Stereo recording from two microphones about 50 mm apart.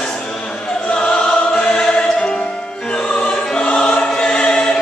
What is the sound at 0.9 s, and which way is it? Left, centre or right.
Music, centre.